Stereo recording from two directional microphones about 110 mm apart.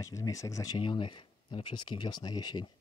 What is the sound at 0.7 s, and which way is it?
Speech, 45° left (ahead or behind).